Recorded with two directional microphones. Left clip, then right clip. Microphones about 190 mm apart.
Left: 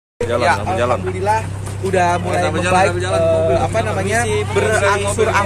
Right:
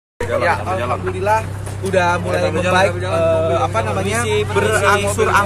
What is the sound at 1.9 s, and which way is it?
Speech, 10° left (ahead or behind).